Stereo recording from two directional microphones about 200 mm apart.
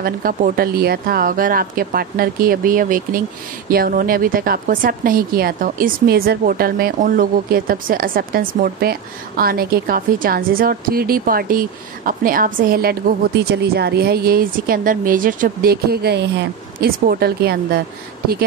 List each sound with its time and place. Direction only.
0.0 s speech: 45° right (ahead or behind)